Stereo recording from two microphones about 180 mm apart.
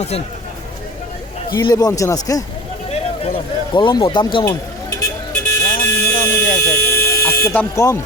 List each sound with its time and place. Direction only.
1.5 s speech: 20° left (ahead or behind)
4.4 s a sound: 20° left (ahead or behind)
5.5 s vehicle: 15° left (ahead or behind)
6.7 s buzzer: 15° left (ahead or behind)